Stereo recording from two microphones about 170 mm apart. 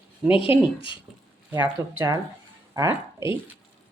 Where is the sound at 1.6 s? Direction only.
10° right (ahead or behind).